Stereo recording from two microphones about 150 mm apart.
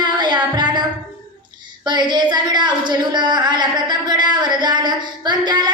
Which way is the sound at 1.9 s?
30° right (ahead or behind).